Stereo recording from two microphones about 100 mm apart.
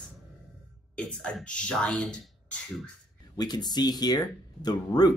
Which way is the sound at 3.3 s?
45° left (ahead or behind).